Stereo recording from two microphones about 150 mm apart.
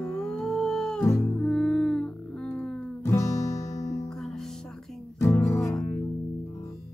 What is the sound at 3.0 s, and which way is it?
Music, 20° left (ahead or behind).